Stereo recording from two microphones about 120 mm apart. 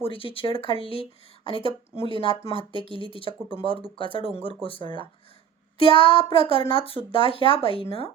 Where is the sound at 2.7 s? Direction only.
45° right (ahead or behind).